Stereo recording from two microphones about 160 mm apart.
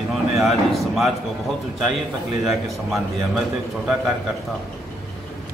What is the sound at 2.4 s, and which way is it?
A man's voice, centre (ahead or behind).